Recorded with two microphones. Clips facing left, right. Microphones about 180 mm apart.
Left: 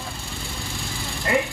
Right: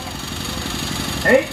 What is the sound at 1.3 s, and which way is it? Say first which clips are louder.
Vehicle: right 9 dB; 60° right (ahead or behind).